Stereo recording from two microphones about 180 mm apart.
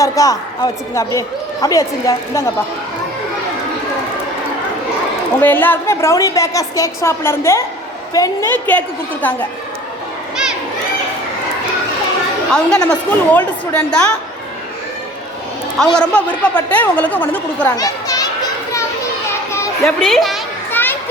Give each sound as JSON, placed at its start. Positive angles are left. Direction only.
{"t": 0.0, "sound": "speech", "side_deg": 20}
{"t": 5.4, "sound": "a woman's voice", "side_deg": 10}
{"t": 12.5, "sound": "a woman's voice", "side_deg": 5}
{"t": 15.8, "sound": "a woman's voice", "side_deg": 5}
{"t": 17.7, "sound": "speech", "side_deg": 20}
{"t": 19.3, "sound": "children playing", "side_deg": 15}
{"t": 19.8, "sound": "a woman's voice", "side_deg": 0}
{"t": 20.8, "sound": "children playing", "side_deg": 10}